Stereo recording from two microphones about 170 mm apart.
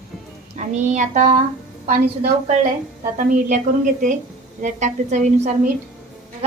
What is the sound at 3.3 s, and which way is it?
A woman's voice, 50° right (ahead or behind).